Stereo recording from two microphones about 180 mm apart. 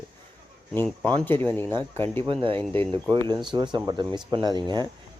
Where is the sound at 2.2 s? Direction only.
30° right (ahead or behind).